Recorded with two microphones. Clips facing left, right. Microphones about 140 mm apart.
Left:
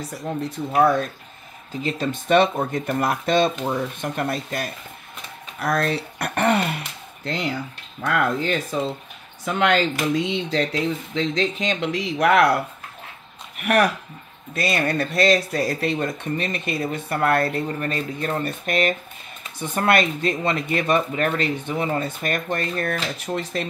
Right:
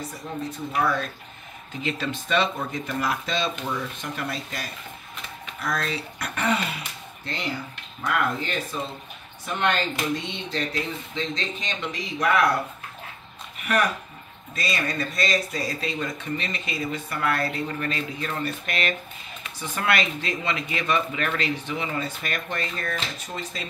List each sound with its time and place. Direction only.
0.4 s speech: 50° left (ahead or behind)
1.7 s speech: 40° left (ahead or behind); by 3.5 s 55° left (ahead or behind)
3.5 s speech: 35° left (ahead or behind)
4.0 s speech: 50° left (ahead or behind)
9.4 s speech: 90° left; by 12.5 s 70° left (ahead or behind)
13.6 s speech: 70° left (ahead or behind)